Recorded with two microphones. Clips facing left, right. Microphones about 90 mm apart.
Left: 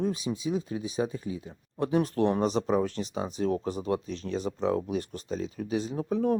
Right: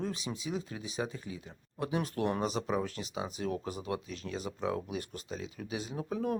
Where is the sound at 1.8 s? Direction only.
40° left (ahead or behind).